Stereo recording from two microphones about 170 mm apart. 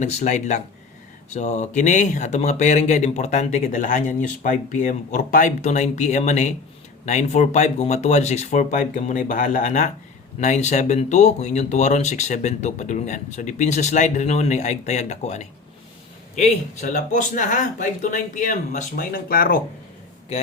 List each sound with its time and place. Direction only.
0.0 s speech: 45° left (ahead or behind)